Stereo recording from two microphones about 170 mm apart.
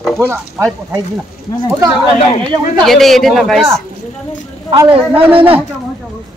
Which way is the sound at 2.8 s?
Centre (ahead or behind).